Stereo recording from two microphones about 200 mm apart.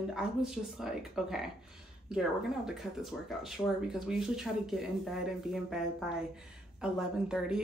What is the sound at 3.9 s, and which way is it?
Speech, centre (ahead or behind).